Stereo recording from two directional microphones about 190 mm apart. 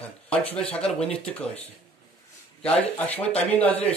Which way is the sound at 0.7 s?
5° left (ahead or behind).